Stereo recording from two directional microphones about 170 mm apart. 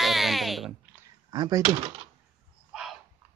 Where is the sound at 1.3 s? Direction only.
20° right (ahead or behind).